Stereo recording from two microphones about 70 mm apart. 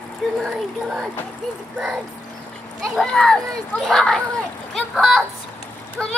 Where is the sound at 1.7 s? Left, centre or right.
Centre.